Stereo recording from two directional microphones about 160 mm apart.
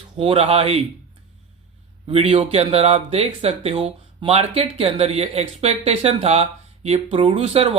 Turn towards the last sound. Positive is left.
turn(degrees=-40)  # may be behind; listen again after turning